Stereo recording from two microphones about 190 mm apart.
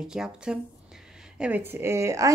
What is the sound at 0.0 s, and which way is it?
Speech, 5° right (ahead or behind).